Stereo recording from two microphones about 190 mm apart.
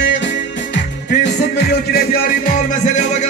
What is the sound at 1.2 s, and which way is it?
Music, 60° left (ahead or behind).